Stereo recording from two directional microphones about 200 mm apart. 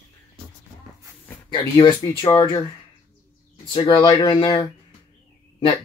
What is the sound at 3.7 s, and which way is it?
Speech, 25° left (ahead or behind).